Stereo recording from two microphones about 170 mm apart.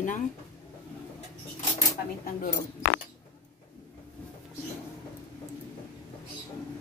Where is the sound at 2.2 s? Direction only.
60° left (ahead or behind).